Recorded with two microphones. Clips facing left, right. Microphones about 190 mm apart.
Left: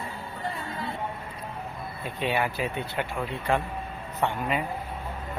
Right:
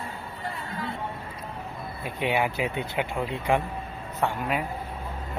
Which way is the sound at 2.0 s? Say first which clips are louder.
Right 2 dB; 15° right (ahead or behind).